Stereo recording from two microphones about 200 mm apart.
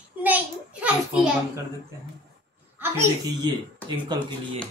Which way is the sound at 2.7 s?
15° right (ahead or behind).